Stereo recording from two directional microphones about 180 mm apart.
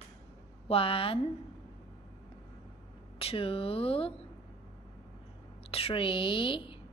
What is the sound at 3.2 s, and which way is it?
Speech, 30° left (ahead or behind).